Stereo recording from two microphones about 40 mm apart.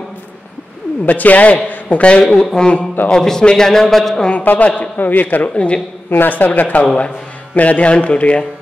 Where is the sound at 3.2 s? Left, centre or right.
Centre.